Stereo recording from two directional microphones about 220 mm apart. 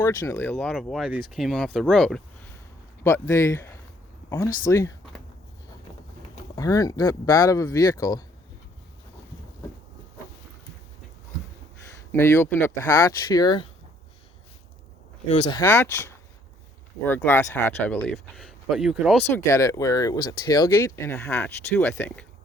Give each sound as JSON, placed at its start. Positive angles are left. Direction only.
{"t": 0.0, "sound": "speech", "side_deg": 15}
{"t": 0.5, "sound": "speech", "side_deg": 0}
{"t": 3.0, "sound": "speech", "side_deg": 10}
{"t": 4.7, "sound": "a sound", "side_deg": 15}
{"t": 6.6, "sound": "speech", "side_deg": 15}
{"t": 12.1, "sound": "speech", "side_deg": 10}
{"t": 15.3, "sound": "speech", "side_deg": 25}
{"t": 15.6, "sound": "speech", "side_deg": 10}
{"t": 19.5, "sound": "speech", "side_deg": 15}